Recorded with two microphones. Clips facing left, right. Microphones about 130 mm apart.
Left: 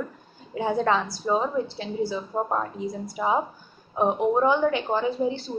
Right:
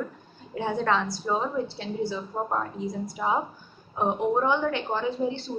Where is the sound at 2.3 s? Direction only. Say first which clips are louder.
Left 4 dB; 15° left (ahead or behind).